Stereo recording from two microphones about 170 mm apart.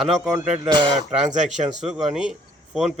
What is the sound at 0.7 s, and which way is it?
Speech, 25° right (ahead or behind).